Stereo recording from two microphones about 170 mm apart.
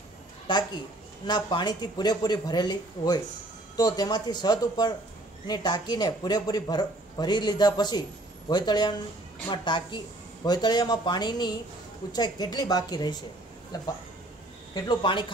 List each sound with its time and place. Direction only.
0.5 s a woman's voice: 25° left (ahead or behind)
14.7 s speech: 25° left (ahead or behind)